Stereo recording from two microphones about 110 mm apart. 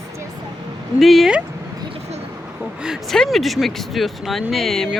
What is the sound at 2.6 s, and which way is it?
Speech, 5° right (ahead or behind).